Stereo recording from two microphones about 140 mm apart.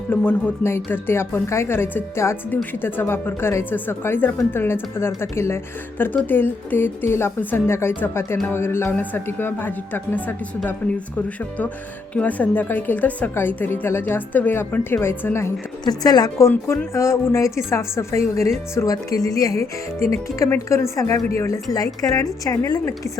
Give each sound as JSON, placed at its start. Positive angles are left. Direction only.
{"t": 0.1, "sound": "a woman's voice", "side_deg": 15}
{"t": 12.1, "sound": "a woman's voice", "side_deg": 10}
{"t": 15.8, "sound": "speech", "side_deg": 30}